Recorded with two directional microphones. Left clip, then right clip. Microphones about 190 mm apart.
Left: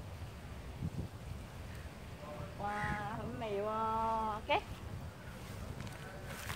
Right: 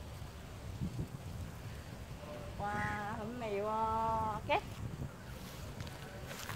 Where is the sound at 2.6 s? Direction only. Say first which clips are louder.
Even; 40° right (ahead or behind).